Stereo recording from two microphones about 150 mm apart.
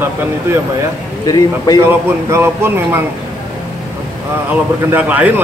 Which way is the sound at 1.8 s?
15° right (ahead or behind).